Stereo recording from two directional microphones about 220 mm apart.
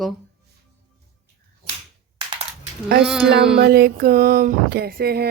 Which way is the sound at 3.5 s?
45° right (ahead or behind).